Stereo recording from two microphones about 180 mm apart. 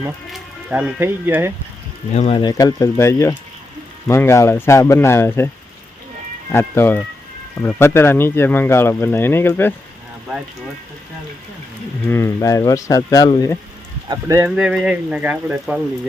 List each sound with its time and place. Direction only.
0.3 s speech: 5° right (ahead or behind)
2.1 s speech: 30° left (ahead or behind); by 5.5 s 15° left (ahead or behind)
6.5 s speech: 15° left (ahead or behind)
12.0 s speech: 15° left (ahead or behind)
14.1 s speech: 20° right (ahead or behind)
14.5 s speech: 5° right (ahead or behind)